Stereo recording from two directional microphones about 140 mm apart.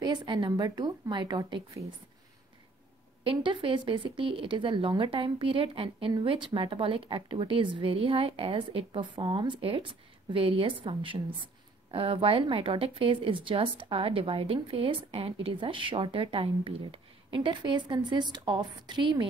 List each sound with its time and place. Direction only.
0.0 s a woman's voice: 30° right (ahead or behind)
3.3 s speech: 40° right (ahead or behind)